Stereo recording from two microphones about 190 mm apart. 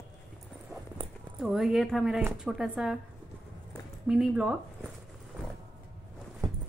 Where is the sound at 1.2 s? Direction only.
Centre (ahead or behind).